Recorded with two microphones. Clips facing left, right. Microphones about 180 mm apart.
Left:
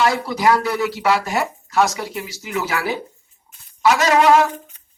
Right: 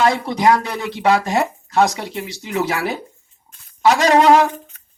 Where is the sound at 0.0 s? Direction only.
25° right (ahead or behind).